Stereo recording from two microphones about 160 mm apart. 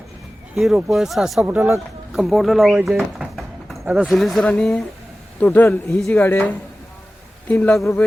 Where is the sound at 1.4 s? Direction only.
15° right (ahead or behind).